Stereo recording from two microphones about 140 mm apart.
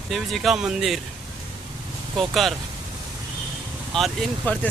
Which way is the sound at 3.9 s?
Centre (ahead or behind).